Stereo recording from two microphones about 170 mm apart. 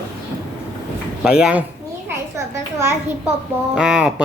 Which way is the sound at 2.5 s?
15° right (ahead or behind).